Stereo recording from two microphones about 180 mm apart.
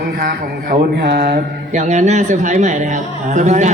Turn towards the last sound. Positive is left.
turn(degrees=-40)  # may be behind; listen again after turning